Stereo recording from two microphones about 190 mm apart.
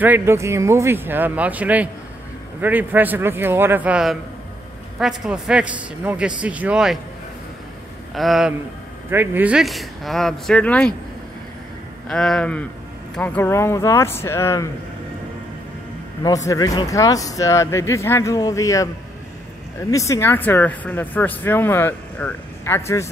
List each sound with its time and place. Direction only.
0.0 s a man's voice: 10° right (ahead or behind)
8.1 s a man's voice: centre (ahead or behind)
12.1 s a man's voice: 5° left (ahead or behind)
16.2 s speech: 20° left (ahead or behind)
19.9 s speech: 15° left (ahead or behind)